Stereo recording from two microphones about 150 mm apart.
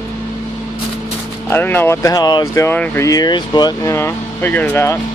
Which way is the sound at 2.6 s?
15° left (ahead or behind).